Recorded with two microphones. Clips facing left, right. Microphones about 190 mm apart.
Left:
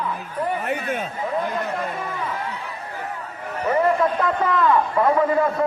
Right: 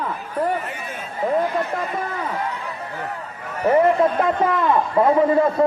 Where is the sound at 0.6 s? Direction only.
65° left (ahead or behind).